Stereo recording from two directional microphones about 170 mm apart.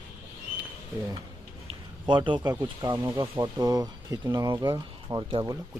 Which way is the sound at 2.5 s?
10° right (ahead or behind).